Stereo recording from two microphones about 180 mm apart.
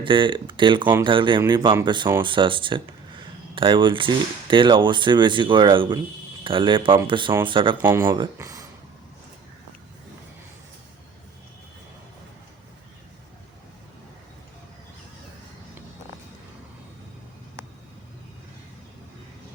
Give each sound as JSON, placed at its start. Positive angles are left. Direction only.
{"t": 0.0, "sound": "speech", "side_deg": -25}
{"t": 7.8, "sound": "speech", "side_deg": -15}